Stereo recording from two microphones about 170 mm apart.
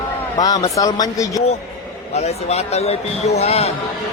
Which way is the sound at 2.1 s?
40° left (ahead or behind).